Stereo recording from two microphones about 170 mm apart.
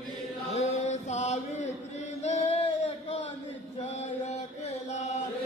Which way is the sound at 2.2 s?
40° left (ahead or behind).